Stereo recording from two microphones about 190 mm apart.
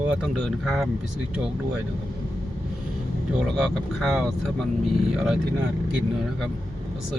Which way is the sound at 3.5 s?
Centre (ahead or behind).